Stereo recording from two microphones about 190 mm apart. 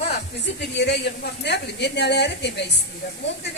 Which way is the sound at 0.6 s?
60° left (ahead or behind).